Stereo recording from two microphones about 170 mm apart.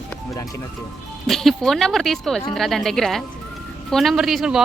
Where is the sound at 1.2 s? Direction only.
Centre (ahead or behind).